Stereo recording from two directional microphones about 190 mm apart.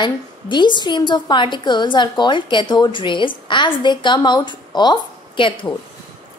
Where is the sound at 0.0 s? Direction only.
25° left (ahead or behind).